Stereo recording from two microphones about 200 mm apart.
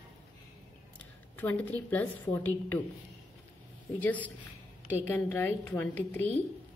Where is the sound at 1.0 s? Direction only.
10° left (ahead or behind).